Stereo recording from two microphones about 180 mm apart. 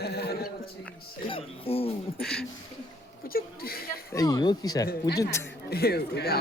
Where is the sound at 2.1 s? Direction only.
5° left (ahead or behind).